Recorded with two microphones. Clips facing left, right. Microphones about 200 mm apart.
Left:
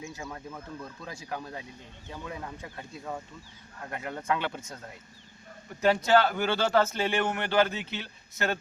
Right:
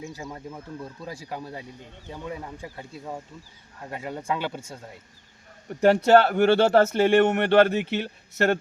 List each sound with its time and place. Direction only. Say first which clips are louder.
0.2 s speech: right 3 dB; 15° right (ahead or behind)
0.9 s speech: right 5 dB; 35° right (ahead or behind)
1.3 s speech: even; 10° right (ahead or behind)
2.7 s speech: even; 10° right (ahead or behind)
4.3 s speech: right 1 dB; 30° right (ahead or behind)
5.6 s a man's voice: right 6 dB; 50° right (ahead or behind)
6.0 s speech: right 6 dB; 65° right (ahead or behind)